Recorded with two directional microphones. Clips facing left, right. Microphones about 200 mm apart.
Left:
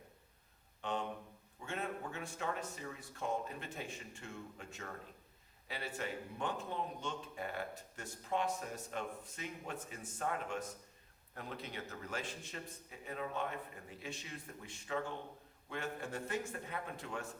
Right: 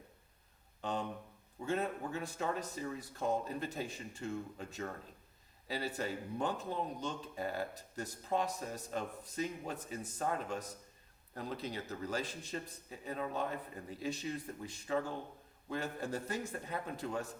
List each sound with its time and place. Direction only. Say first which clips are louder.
0.8 s speech: right 1 dB; 35° right (ahead or behind)